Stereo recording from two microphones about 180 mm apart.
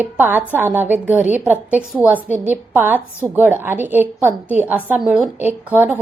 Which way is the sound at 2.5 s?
10° right (ahead or behind).